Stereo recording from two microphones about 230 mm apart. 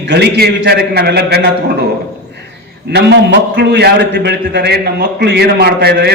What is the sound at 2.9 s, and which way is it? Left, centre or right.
A man's voice, right.